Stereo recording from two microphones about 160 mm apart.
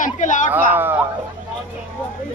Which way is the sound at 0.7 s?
10° right (ahead or behind).